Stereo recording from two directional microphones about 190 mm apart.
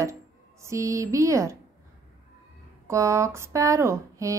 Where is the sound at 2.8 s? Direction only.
15° right (ahead or behind).